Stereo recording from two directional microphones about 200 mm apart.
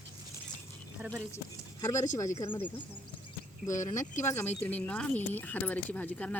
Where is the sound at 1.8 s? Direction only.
15° left (ahead or behind).